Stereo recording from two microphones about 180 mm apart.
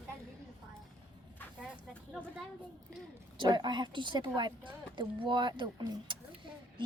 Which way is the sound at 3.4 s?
25° right (ahead or behind).